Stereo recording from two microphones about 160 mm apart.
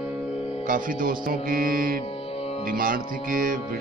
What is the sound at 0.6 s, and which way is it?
Music, 60° right (ahead or behind).